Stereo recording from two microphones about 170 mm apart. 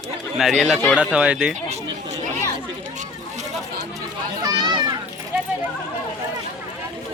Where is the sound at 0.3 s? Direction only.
Centre (ahead or behind).